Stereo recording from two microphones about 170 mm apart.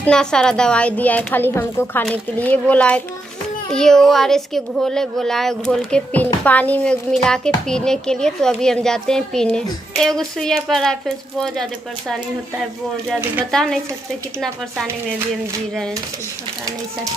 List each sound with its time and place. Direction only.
0.0 s a woman's voice: 5° left (ahead or behind)
13.5 s speech: 5° left (ahead or behind)